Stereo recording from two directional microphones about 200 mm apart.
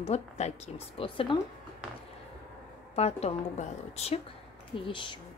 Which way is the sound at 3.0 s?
30° left (ahead or behind).